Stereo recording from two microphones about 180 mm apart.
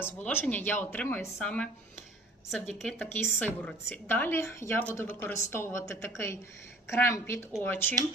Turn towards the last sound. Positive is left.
turn(degrees=10)  # may be behind; listen again after turning